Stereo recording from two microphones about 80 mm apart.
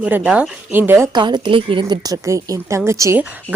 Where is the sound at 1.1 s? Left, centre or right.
Right.